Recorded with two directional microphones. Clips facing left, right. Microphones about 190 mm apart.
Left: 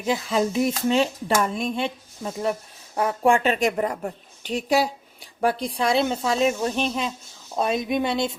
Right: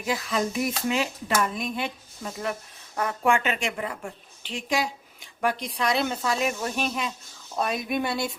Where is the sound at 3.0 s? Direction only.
30° left (ahead or behind).